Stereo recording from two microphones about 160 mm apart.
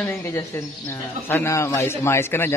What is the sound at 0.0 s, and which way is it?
Speech, 15° left (ahead or behind).